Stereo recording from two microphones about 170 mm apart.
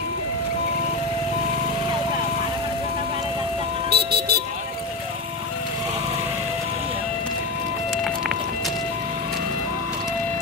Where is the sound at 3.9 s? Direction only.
65° right (ahead or behind).